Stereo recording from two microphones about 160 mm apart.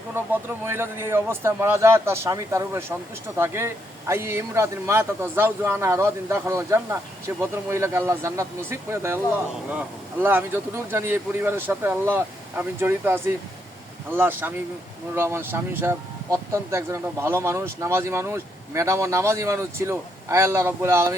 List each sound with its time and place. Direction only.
0.1 s speech: 15° right (ahead or behind)